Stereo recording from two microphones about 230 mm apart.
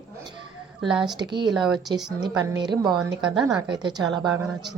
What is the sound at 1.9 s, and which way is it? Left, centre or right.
A woman's voice, centre.